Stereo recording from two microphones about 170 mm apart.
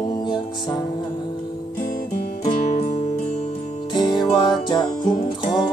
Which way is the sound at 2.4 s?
40° left (ahead or behind).